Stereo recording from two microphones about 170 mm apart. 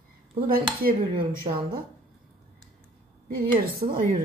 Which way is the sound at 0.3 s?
60° right (ahead or behind).